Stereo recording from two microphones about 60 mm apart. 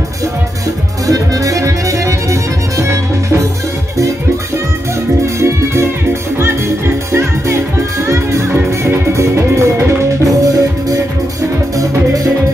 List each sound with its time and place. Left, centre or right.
1.0 s music: right
5.2 s music: right
7.1 s music: right
10.4 s music: right